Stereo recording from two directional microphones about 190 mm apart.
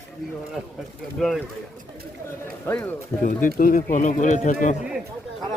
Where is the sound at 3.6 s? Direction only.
45° left (ahead or behind).